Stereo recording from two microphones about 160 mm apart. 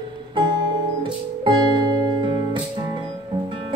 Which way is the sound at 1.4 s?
30° right (ahead or behind).